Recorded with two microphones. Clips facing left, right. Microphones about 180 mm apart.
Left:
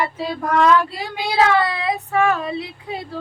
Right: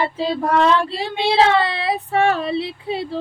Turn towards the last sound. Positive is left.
turn(degrees=-30)  # may be behind; listen again after turning